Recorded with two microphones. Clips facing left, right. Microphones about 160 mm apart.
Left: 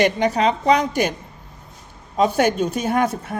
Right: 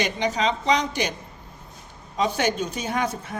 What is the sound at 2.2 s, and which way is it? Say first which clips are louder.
A woman's voice: left 6 dB; 50° left (ahead or behind).